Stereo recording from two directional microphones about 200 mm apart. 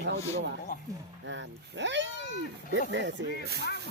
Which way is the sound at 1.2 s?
65° right (ahead or behind).